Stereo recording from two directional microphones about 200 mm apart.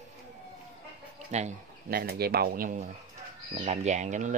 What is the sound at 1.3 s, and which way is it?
Speech, 35° right (ahead or behind).